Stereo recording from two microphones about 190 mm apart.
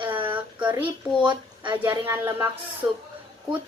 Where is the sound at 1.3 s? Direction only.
25° right (ahead or behind).